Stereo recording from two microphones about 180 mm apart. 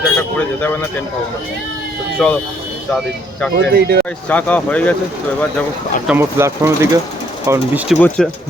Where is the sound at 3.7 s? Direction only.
60° right (ahead or behind).